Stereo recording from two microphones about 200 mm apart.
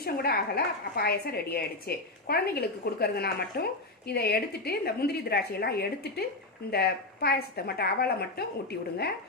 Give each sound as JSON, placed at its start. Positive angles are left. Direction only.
{"t": 0.0, "sound": "a woman's voice", "side_deg": 50}